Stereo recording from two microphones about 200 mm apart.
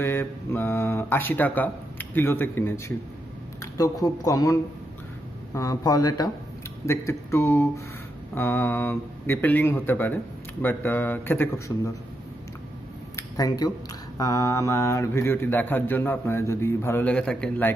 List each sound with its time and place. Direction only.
0.0 s speech: 10° left (ahead or behind)
13.1 s a sound: 20° left (ahead or behind)
14.1 s speech: 15° left (ahead or behind)